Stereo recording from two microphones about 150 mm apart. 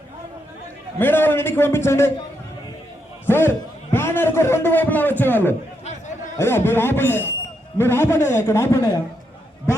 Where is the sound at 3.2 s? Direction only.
15° left (ahead or behind).